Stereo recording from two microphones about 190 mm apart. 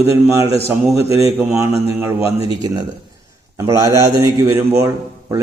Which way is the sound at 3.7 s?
15° right (ahead or behind).